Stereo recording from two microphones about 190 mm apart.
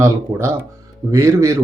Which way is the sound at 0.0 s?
15° right (ahead or behind).